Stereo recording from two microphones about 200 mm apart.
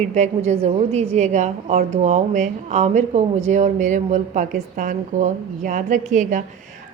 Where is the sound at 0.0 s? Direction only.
35° right (ahead or behind).